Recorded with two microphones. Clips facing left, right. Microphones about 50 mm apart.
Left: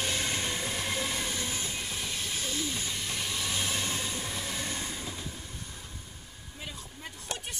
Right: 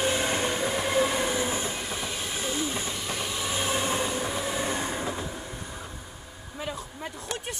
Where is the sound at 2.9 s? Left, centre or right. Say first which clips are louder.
Right 3 dB; centre; by 6.0 s right.